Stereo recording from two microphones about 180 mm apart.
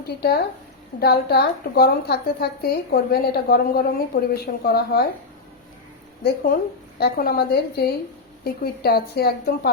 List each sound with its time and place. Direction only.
0.2 s a woman's voice: 60° left (ahead or behind)
6.2 s a woman's voice: 55° left (ahead or behind)